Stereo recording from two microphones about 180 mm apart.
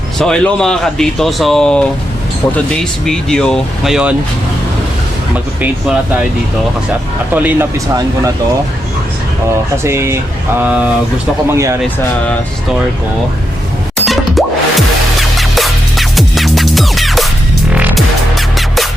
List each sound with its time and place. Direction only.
0.2 s speech: 5° left (ahead or behind)
3.1 s speech: 5° left (ahead or behind)
7.3 s speech: 10° right (ahead or behind)
9.7 s speech: 15° right (ahead or behind)
14.0 s music: centre (ahead or behind)